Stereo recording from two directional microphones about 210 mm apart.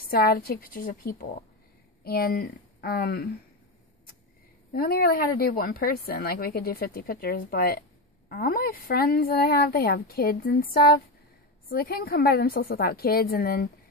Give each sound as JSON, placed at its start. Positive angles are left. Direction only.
{"t": 0.1, "sound": "speech", "side_deg": 45}
{"t": 4.7, "sound": "speech", "side_deg": 45}